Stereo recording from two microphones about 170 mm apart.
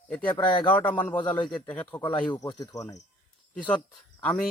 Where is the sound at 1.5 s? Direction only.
5° left (ahead or behind).